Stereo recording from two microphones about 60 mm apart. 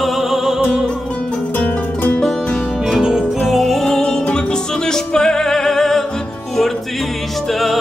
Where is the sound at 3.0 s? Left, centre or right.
Centre.